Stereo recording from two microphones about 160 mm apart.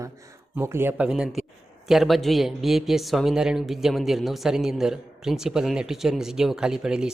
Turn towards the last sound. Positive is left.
turn(degrees=-5)  # may be behind; listen again after turning